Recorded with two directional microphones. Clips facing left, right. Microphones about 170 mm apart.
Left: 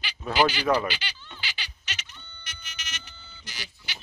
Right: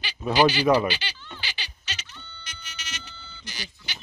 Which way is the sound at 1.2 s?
35° right (ahead or behind).